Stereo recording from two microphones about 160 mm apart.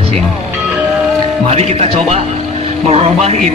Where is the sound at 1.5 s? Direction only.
40° right (ahead or behind).